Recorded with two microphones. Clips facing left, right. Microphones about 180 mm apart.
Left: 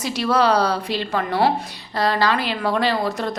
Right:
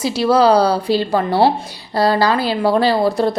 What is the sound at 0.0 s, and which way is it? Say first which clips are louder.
A woman's voice: right 6 dB; 30° right (ahead or behind).